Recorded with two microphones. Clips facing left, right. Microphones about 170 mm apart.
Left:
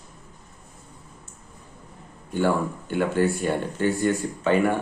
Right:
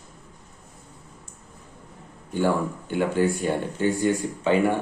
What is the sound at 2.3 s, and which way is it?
Speech, 15° right (ahead or behind).